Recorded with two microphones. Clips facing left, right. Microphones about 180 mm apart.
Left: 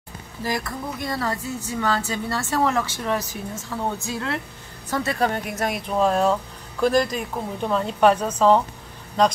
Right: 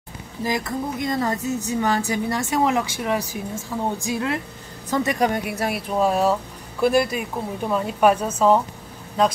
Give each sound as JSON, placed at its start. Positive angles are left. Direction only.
{"t": 0.4, "sound": "speech", "side_deg": -20}